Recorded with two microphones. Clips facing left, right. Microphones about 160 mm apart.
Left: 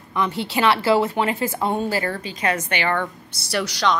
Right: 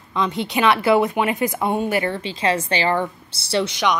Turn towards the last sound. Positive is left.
turn(degrees=-25)  # may be behind; listen again after turning